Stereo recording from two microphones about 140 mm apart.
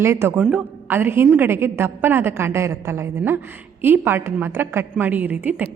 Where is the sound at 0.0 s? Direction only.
20° right (ahead or behind).